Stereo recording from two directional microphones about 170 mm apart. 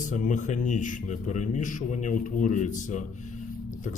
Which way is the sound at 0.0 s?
50° left (ahead or behind).